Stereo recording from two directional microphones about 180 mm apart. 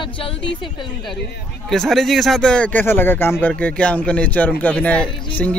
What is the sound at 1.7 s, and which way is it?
Speech, centre (ahead or behind).